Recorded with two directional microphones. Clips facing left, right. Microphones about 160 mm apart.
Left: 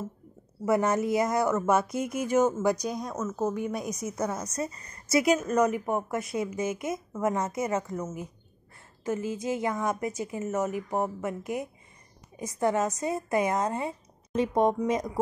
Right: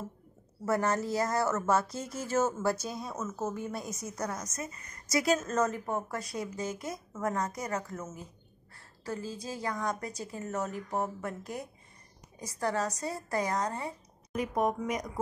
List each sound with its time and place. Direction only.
0.7 s a woman's voice: 20° left (ahead or behind)
4.5 s a woman's voice: 35° left (ahead or behind)